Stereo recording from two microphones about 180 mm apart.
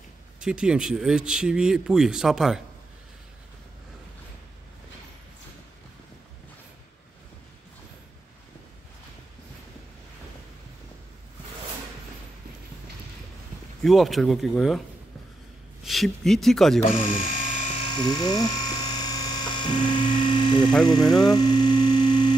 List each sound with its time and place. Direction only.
0.4 s speech: 5° right (ahead or behind)
13.8 s speech: centre (ahead or behind)
15.8 s speech: centre (ahead or behind)
17.3 s a sound: 45° left (ahead or behind)
17.7 s electric toothbrush: 25° left (ahead or behind)
21.0 s speech: centre (ahead or behind)
21.3 s hum: 25° left (ahead or behind)